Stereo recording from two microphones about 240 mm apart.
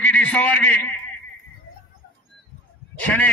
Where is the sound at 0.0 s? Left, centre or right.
Centre.